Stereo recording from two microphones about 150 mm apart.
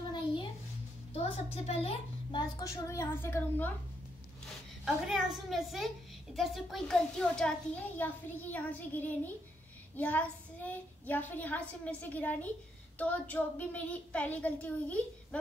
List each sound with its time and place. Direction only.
0.1 s a sound: 35° left (ahead or behind)
1.1 s a child's voice: 45° left (ahead or behind)
2.6 s a woman's voice: 20° left (ahead or behind)
4.8 s a woman's voice: 5° right (ahead or behind)